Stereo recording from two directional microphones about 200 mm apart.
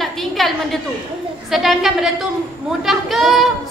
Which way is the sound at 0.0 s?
Centre (ahead or behind).